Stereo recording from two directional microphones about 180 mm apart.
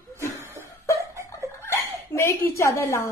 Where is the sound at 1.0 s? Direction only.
15° right (ahead or behind).